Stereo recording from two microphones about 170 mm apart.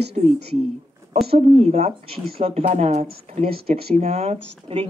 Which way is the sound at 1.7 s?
40° right (ahead or behind).